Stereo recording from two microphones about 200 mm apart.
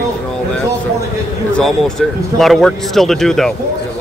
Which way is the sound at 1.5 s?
Centre (ahead or behind).